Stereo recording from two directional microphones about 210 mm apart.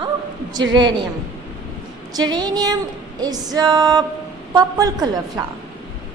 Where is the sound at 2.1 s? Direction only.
20° right (ahead or behind).